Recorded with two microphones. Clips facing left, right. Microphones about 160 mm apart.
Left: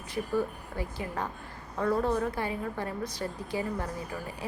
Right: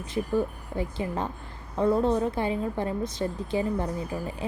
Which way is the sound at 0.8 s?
25° right (ahead or behind).